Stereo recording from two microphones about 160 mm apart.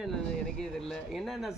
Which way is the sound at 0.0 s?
Centre (ahead or behind).